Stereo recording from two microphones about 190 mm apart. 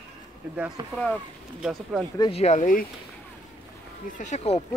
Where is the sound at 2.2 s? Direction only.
30° left (ahead or behind).